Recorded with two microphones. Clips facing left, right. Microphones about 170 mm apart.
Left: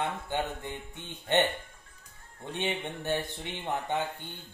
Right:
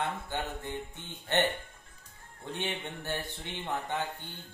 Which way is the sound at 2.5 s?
15° left (ahead or behind).